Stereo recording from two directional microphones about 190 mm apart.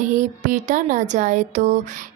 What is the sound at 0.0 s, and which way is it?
Speech, 40° right (ahead or behind).